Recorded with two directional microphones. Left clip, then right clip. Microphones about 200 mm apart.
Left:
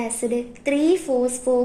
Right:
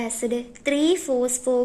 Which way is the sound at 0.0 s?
45° right (ahead or behind).